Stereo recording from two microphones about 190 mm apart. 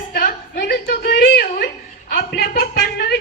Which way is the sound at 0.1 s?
45° left (ahead or behind).